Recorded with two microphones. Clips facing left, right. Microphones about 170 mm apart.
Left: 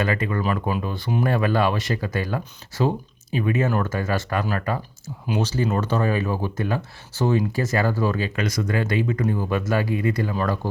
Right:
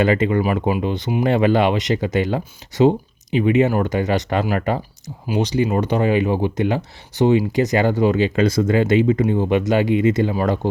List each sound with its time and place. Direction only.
0.0 s speech: 25° right (ahead or behind)